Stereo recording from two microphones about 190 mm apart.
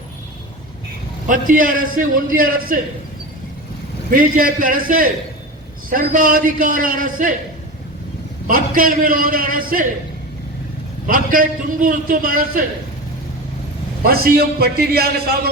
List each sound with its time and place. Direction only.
1.3 s a man's voice: 45° right (ahead or behind)
4.1 s a man's voice: 45° right (ahead or behind)
8.4 s a man's voice: 45° right (ahead or behind)
11.0 s a man's voice: 45° right (ahead or behind)
14.0 s a man's voice: 55° right (ahead or behind)